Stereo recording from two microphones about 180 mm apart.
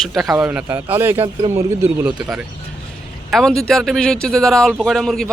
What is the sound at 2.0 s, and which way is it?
Speech, 25° right (ahead or behind).